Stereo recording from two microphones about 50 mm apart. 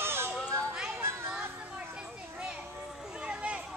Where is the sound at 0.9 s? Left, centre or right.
Right.